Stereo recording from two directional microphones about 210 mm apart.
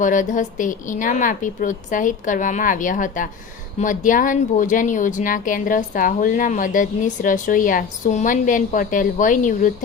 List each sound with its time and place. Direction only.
0.0 s speech: 40° left (ahead or behind)